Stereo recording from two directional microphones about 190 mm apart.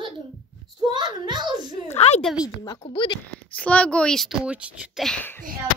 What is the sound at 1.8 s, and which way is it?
Speech, 35° left (ahead or behind).